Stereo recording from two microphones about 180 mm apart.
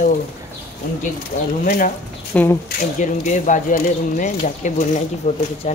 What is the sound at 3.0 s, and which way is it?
Speech, 45° left (ahead or behind).